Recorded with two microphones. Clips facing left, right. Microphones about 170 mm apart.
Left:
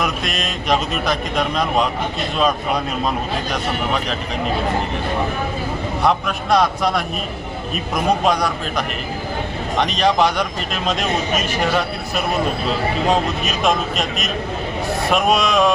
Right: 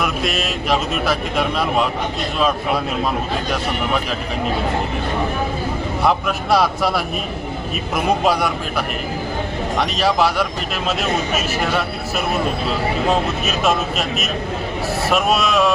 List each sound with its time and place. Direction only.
0.0 s speech: 5° right (ahead or behind)
6.0 s speech: 5° right (ahead or behind)